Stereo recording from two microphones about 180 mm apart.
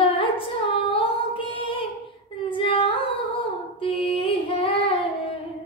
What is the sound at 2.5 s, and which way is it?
Singing, 30° left (ahead or behind).